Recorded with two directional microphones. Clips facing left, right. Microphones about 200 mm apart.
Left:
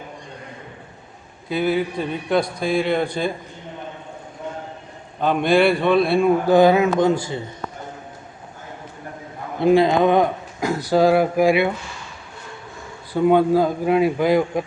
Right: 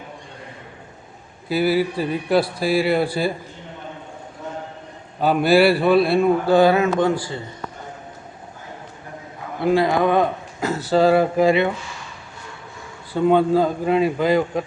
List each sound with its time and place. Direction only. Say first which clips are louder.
1.5 s a man's voice: right 2 dB; 5° right (ahead or behind)
5.2 s a man's voice: right 1 dB; 5° right (ahead or behind)
6.4 s speech: left 1 dB; 15° left (ahead or behind)
9.6 s speech: left 3 dB; 20° left (ahead or behind)
13.1 s speech: left 1 dB; 10° left (ahead or behind)